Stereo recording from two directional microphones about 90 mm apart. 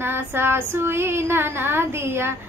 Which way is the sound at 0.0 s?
25° right (ahead or behind).